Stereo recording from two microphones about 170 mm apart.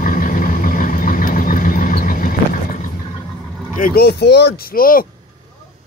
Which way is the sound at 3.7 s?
60° left (ahead or behind).